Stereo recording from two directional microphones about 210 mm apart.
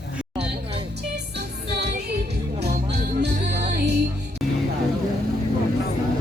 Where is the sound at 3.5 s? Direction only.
35° right (ahead or behind).